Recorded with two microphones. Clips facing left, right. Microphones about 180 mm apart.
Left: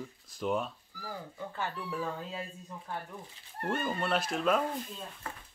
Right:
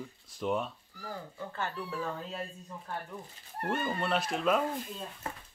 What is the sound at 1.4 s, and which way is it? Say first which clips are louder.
Speech: even; 15° left (ahead or behind).